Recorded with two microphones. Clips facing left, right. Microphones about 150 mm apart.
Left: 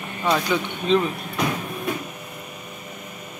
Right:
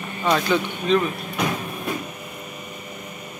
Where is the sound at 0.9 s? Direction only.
25° left (ahead or behind).